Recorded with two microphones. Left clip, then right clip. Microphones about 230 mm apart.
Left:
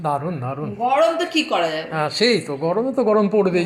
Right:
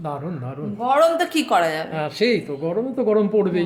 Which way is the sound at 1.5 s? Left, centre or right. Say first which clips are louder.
Right 4 dB; right.